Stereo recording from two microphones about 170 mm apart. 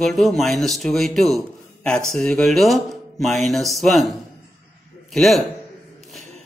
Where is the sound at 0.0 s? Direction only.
Centre (ahead or behind).